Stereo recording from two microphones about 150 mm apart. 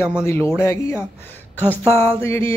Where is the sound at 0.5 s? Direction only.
15° left (ahead or behind).